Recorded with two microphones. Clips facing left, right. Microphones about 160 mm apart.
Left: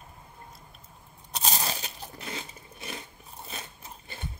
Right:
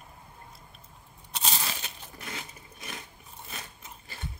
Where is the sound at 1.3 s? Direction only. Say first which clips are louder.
Left 3 dB; 40° left (ahead or behind).